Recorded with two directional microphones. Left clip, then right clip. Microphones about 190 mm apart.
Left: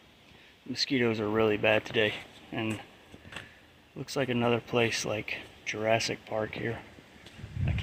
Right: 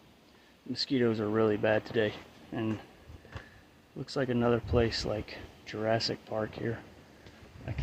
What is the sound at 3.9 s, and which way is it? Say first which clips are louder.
Speech: left 1 dB; 5° right (ahead or behind).